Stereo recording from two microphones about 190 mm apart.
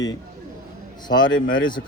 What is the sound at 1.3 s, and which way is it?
Speech, 90° left.